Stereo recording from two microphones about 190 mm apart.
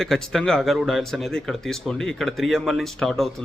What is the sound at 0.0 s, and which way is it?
Speech, centre (ahead or behind).